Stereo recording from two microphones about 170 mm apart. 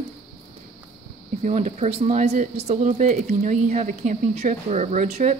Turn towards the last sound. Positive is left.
turn(degrees=-40)  # may be behind; listen again after turning